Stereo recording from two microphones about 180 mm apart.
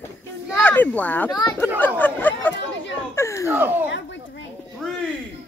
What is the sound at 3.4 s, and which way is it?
Speech, 10° right (ahead or behind).